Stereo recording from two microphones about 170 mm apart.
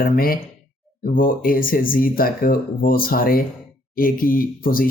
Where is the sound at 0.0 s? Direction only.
60° left (ahead or behind).